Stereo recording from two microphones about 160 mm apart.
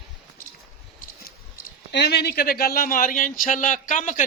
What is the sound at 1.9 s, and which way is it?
A man's voice, 90° left.